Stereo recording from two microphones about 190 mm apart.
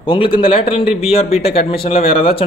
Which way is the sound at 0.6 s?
30° left (ahead or behind).